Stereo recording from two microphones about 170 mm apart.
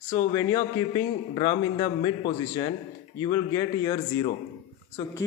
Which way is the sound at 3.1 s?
20° left (ahead or behind).